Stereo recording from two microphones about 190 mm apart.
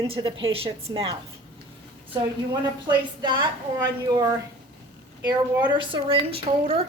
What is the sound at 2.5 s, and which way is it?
Speech, 25° right (ahead or behind).